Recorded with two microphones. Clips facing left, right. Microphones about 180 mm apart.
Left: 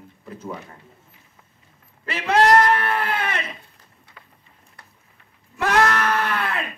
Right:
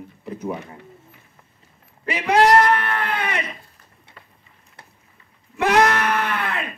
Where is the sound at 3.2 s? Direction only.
15° right (ahead or behind).